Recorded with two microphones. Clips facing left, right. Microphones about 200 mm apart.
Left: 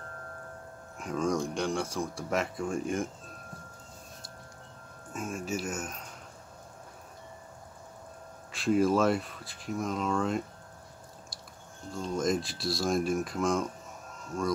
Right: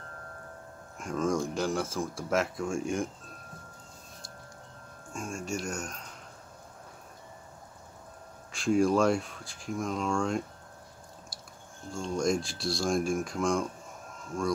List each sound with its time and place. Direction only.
0.9 s speech: centre (ahead or behind)
5.1 s speech: 5° left (ahead or behind)
8.5 s speech: centre (ahead or behind)
11.9 s speech: centre (ahead or behind)